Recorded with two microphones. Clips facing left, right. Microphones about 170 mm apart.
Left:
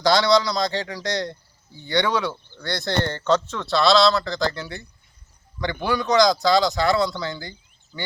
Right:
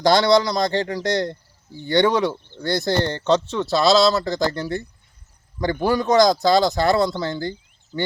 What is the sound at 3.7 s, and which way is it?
A man's voice, 45° right (ahead or behind).